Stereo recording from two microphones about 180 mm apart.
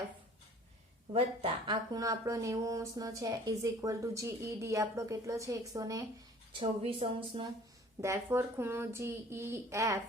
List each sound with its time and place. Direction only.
1.1 s speech: 30° right (ahead or behind)
6.5 s speech: 30° right (ahead or behind)
8.0 s speech: 15° right (ahead or behind)